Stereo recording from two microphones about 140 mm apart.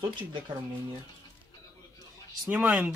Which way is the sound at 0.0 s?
35° right (ahead or behind).